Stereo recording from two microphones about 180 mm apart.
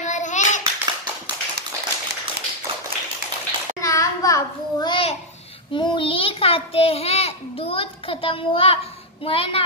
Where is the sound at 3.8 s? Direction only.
20° left (ahead or behind).